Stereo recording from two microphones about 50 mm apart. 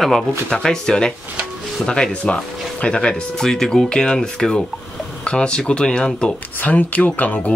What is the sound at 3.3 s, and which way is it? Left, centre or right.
Speech, centre.